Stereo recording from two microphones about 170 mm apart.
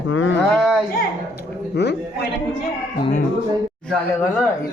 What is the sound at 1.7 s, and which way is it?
Speech, 80° left.